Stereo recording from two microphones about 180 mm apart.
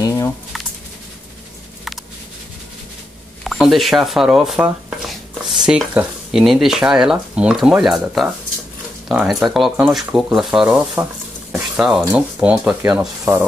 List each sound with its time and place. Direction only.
0.0 s bird: 15° left (ahead or behind)
3.4 s speech: centre (ahead or behind)
5.7 s speech: 5° right (ahead or behind)
11.5 s a sound: 5° right (ahead or behind)
12.0 s speech: 10° right (ahead or behind)